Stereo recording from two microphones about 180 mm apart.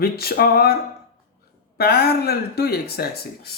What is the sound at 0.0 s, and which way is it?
Speech, 60° left (ahead or behind).